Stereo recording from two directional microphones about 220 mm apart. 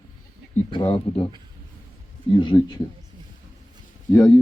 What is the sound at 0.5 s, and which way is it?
Speech, 25° left (ahead or behind).